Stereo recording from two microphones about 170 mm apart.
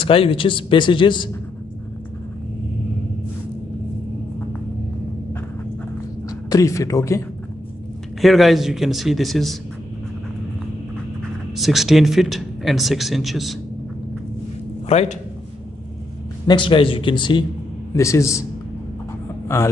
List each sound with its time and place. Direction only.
0.0 s a man's voice: 30° left (ahead or behind)
6.2 s a woman's voice: 20° left (ahead or behind)
8.2 s speech: centre (ahead or behind)
11.5 s speech: centre (ahead or behind)
14.9 s a man's voice: 40° left (ahead or behind)
16.4 s a man's voice: 30° left (ahead or behind)
19.4 s a man's voice: 15° left (ahead or behind)